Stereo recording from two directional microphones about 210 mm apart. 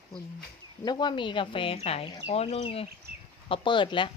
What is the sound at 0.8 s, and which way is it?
Speech, 20° left (ahead or behind).